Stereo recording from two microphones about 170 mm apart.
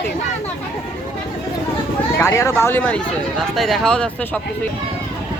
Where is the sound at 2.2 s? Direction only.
15° left (ahead or behind).